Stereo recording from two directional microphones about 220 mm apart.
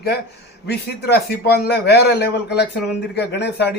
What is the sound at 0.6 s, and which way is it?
Speech, 45° left (ahead or behind).